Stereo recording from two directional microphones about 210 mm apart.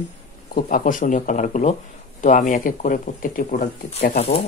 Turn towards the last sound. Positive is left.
turn(degrees=30)  # may be behind; listen again after turning